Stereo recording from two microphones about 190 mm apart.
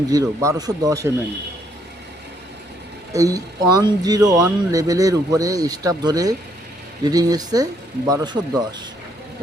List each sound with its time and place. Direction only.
0.1 s speech: 20° right (ahead or behind)
3.1 s speech: 15° right (ahead or behind)